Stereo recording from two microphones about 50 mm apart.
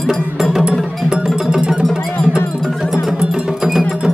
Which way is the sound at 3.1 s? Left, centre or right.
Centre.